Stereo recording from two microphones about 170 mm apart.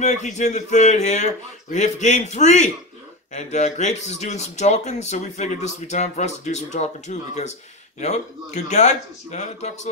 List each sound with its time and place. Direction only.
0.0 s a man's voice: 45° left (ahead or behind)
8.6 s a man's voice: 45° left (ahead or behind)